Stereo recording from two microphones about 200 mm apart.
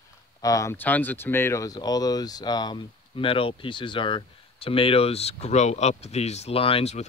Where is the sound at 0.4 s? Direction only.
15° left (ahead or behind).